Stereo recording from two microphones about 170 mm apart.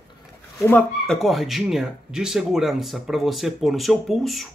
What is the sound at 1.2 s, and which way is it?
Speech, centre (ahead or behind).